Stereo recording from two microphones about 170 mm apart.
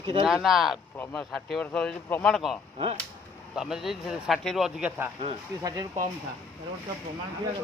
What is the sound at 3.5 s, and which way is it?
A man's voice, centre (ahead or behind).